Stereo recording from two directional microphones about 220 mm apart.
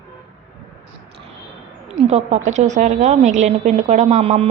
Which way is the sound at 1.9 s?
30° right (ahead or behind).